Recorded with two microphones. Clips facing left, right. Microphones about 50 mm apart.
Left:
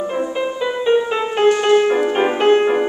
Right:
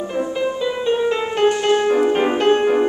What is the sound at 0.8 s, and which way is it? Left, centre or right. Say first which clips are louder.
Music: left 3 dB; centre.